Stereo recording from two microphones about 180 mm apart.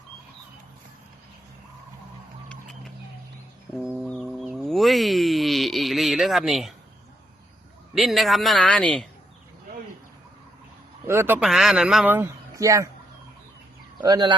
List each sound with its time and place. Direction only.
3.8 s a sound: centre (ahead or behind)
7.9 s speech: centre (ahead or behind)
11.0 s a man's voice: 15° right (ahead or behind)
14.0 s speech: 25° right (ahead or behind)